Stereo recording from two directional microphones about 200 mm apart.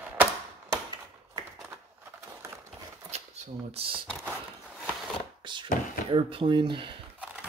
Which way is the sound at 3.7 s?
25° right (ahead or behind).